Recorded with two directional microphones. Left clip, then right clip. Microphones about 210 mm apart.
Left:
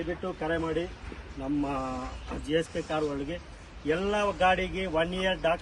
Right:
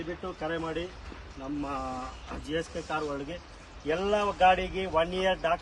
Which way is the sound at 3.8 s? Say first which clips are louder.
Even; 55° right (ahead or behind).